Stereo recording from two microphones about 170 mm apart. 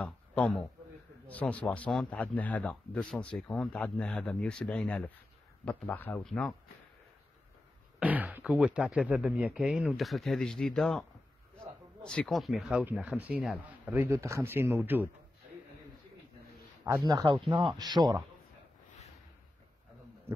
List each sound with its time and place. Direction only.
0.0 s a man's voice: 5° left (ahead or behind)
8.0 s speech: 10° right (ahead or behind)
16.8 s speech: 20° right (ahead or behind)